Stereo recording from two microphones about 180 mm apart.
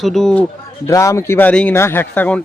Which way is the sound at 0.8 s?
15° left (ahead or behind).